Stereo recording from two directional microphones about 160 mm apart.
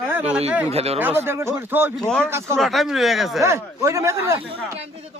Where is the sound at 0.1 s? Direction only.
10° right (ahead or behind).